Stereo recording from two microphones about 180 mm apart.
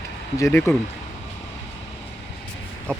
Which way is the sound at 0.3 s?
15° left (ahead or behind).